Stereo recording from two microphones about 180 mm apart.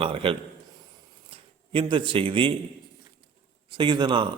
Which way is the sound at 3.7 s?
25° right (ahead or behind).